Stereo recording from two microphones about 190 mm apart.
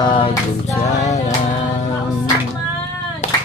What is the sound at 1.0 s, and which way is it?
Music, 35° left (ahead or behind).